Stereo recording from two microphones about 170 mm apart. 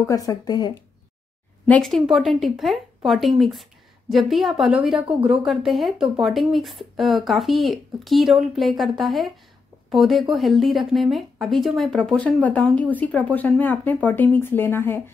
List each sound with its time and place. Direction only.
0.0 s speech: 20° left (ahead or behind)
1.7 s a woman's voice: 5° left (ahead or behind)